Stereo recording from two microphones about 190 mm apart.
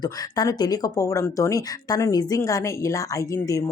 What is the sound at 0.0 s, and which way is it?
Speech, 20° left (ahead or behind).